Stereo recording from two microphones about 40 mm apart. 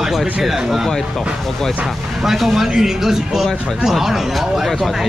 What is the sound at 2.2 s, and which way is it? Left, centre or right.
Speech, centre.